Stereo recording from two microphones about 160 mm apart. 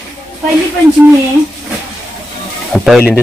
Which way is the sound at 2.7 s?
Centre (ahead or behind).